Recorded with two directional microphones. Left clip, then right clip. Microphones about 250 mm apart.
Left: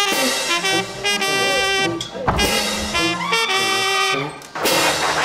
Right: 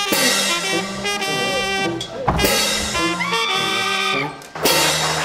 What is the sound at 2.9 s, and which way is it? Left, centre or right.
Music, left.